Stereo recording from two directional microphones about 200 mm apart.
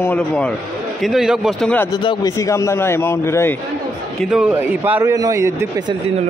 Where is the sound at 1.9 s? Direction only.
20° left (ahead or behind).